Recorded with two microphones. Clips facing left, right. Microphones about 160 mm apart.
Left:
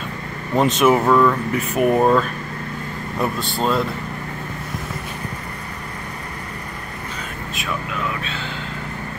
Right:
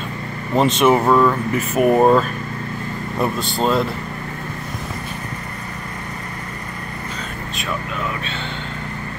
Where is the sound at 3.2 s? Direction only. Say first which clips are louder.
Right 2 dB; centre (ahead or behind).